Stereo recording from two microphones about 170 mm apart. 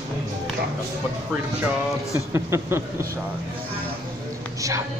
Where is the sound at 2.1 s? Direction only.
15° right (ahead or behind).